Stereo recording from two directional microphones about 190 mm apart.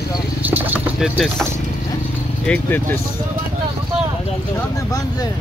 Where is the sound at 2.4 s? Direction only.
5° left (ahead or behind).